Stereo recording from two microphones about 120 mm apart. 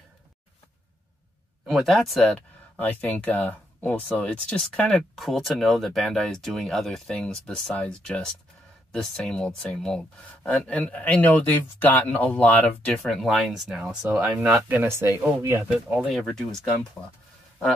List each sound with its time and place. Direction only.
1.7 s speech: centre (ahead or behind)
2.8 s speech: 15° left (ahead or behind)
13.0 s speech: centre (ahead or behind)
14.8 s speech: 20° right (ahead or behind)
15.9 s speech: 5° right (ahead or behind); by 17.1 s 15° left (ahead or behind)